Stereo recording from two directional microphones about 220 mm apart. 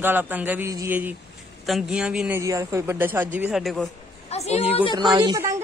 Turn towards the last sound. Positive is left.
turn(degrees=-15)  # may be behind; listen again after turning